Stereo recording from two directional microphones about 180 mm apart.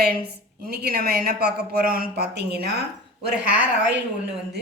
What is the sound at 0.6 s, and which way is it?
Speech, 60° right (ahead or behind).